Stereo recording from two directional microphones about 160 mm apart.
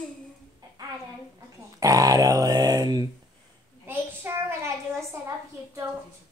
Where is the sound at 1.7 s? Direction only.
20° right (ahead or behind).